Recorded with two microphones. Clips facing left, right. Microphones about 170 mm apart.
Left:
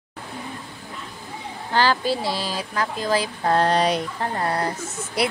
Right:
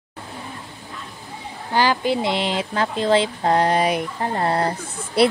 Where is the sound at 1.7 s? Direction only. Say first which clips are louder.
Right 1 dB; 15° right (ahead or behind).